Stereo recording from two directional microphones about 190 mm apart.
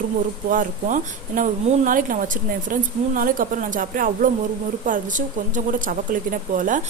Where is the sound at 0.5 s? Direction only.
40° right (ahead or behind).